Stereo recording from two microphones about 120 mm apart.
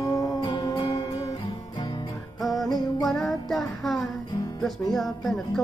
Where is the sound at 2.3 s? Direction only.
Centre (ahead or behind).